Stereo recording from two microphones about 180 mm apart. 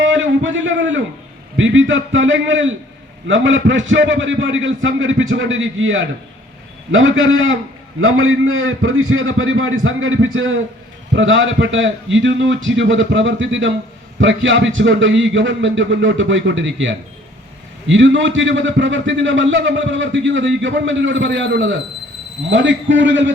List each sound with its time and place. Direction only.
0.0 s a sound: 90° right
1.5 s a man's voice: 90° right
8.8 s a man's voice: 90° right